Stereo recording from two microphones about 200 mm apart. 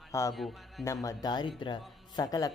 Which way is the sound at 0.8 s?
15° left (ahead or behind).